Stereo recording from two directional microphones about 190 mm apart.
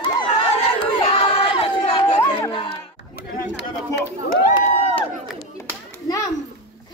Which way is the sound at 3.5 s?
60° left (ahead or behind).